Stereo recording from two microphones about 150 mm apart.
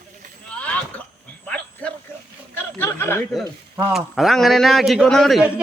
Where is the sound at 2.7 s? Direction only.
15° left (ahead or behind).